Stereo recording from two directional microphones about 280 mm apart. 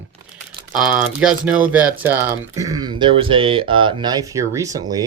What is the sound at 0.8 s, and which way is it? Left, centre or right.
Speech, centre.